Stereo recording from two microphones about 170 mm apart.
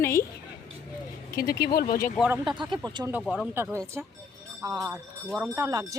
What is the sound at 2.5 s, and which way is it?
Speech, 25° right (ahead or behind).